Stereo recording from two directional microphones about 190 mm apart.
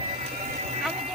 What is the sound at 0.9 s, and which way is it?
Vehicle, 35° right (ahead or behind).